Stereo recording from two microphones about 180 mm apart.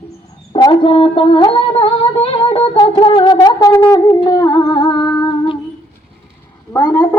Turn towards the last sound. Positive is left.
turn(degrees=15)  # may be behind; listen again after turning